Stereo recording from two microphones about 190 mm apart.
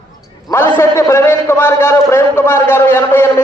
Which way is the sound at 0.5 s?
15° left (ahead or behind).